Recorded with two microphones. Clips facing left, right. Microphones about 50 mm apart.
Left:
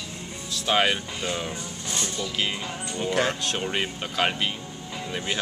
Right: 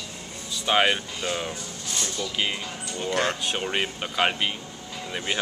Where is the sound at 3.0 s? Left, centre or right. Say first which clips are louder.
Left 1 dB; centre.